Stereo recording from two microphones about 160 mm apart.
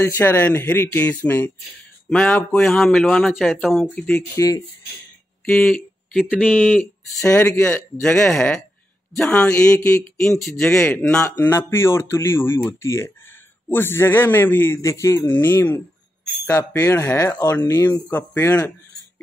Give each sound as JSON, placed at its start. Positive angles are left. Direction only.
{"t": 0.0, "sound": "speech", "side_deg": 15}
{"t": 4.4, "sound": "speech", "side_deg": 20}
{"t": 5.4, "sound": "speech", "side_deg": 5}